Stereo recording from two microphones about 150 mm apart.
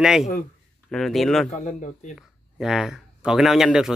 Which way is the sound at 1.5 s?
55° left (ahead or behind).